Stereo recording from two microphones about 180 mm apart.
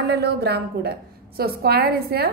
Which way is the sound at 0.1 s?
65° right (ahead or behind).